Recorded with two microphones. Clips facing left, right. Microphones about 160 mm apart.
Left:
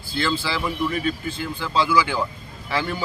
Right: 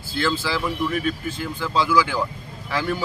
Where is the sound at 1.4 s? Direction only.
5° right (ahead or behind).